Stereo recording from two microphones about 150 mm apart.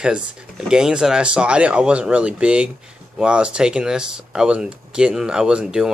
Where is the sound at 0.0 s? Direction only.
5° right (ahead or behind).